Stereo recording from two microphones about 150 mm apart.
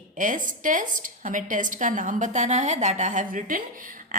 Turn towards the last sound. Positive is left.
turn(degrees=-65)  # may be behind; listen again after turning